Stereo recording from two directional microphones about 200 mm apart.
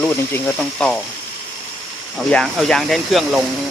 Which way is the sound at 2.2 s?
5° left (ahead or behind).